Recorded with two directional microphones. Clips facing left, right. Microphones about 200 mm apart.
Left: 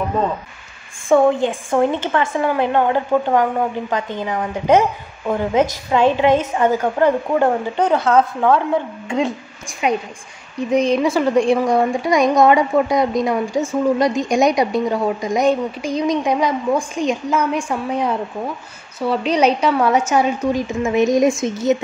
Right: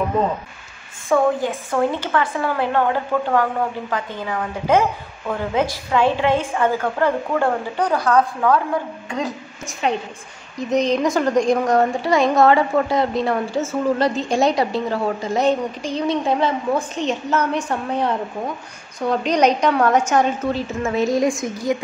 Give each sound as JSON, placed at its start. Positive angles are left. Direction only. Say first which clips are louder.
{"t": 1.0, "sound": "a woman's voice", "louder": "left 4 dB", "side_deg": 25}
{"t": 9.7, "sound": "a woman's voice", "louder": "left 2 dB", "side_deg": 10}